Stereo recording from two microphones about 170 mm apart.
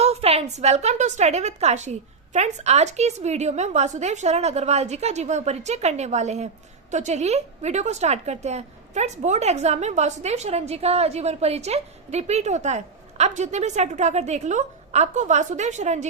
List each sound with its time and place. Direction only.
0.0 s a woman's voice: 35° right (ahead or behind)